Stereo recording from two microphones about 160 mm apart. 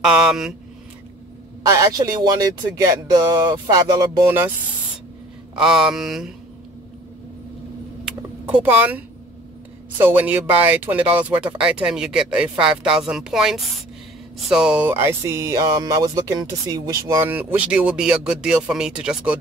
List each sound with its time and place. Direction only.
0.0 s speech: 5° right (ahead or behind)
1.7 s speech: 20° right (ahead or behind)
5.6 s mantra: 5° right (ahead or behind)
8.5 s speech: 10° right (ahead or behind)